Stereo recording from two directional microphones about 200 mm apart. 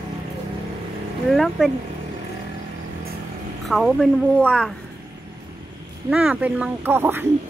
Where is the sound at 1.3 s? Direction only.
Centre (ahead or behind).